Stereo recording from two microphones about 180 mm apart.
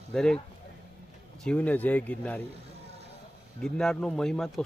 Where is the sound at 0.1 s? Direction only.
5° left (ahead or behind).